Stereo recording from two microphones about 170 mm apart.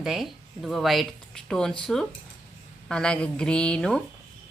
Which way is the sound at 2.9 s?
5° left (ahead or behind).